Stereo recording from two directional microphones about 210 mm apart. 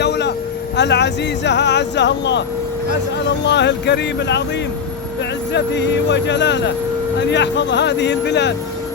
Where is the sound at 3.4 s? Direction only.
55° left (ahead or behind).